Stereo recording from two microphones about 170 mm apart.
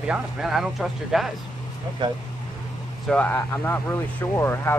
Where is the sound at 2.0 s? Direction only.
30° right (ahead or behind).